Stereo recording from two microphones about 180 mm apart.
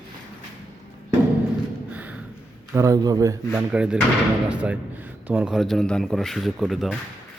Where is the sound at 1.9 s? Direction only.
10° right (ahead or behind).